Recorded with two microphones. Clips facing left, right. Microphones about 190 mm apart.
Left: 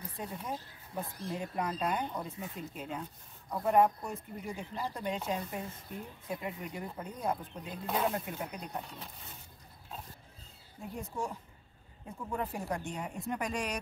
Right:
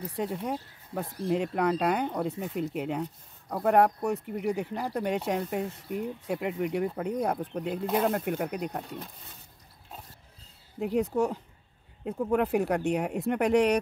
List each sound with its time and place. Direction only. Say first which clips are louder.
0.0 s speech: right 9 dB; 75° right (ahead or behind)
10.8 s speech: right 12 dB; 70° right (ahead or behind)